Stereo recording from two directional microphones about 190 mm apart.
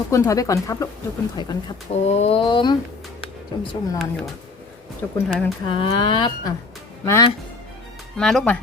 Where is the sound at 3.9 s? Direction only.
Centre (ahead or behind).